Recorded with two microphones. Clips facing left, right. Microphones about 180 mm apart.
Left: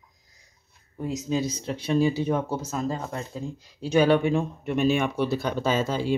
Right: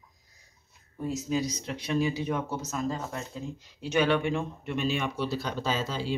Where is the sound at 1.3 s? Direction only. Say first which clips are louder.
Left 4 dB; 25° left (ahead or behind).